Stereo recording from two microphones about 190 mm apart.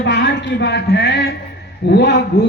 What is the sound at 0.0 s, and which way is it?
A man's voice, 65° left (ahead or behind).